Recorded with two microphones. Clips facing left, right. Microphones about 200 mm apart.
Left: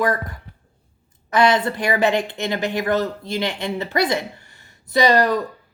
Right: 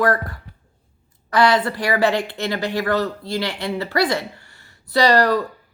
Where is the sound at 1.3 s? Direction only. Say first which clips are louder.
Even; 20° left (ahead or behind).